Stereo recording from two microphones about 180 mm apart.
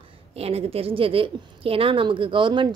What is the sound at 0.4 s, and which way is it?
A woman's voice, 35° right (ahead or behind).